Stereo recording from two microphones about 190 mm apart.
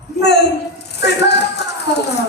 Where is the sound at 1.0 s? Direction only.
60° left (ahead or behind).